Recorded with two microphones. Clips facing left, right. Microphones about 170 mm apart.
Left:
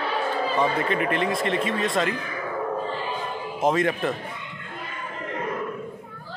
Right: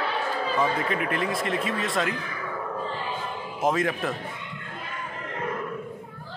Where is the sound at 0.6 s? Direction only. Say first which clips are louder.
Left 2 dB; centre (ahead or behind).